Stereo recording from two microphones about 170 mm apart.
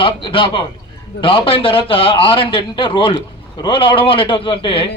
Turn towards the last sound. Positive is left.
turn(degrees=30)  # may be behind; listen again after turning